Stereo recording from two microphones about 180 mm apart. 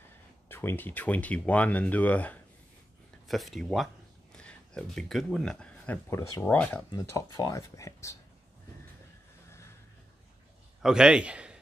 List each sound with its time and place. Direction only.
0.5 s speech: 10° left (ahead or behind)
6.9 s speech: 20° left (ahead or behind)
9.5 s a sound: 15° left (ahead or behind)
10.8 s a man's voice: 5° right (ahead or behind)